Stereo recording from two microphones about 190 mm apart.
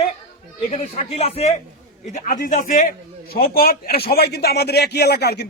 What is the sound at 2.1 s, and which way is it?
A man's voice, 45° left (ahead or behind).